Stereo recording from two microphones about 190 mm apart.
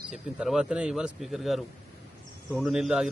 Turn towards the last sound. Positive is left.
turn(degrees=0)  # may be behind; listen again after turning